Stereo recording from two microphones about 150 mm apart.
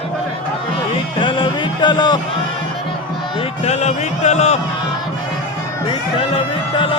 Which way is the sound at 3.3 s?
45° left (ahead or behind).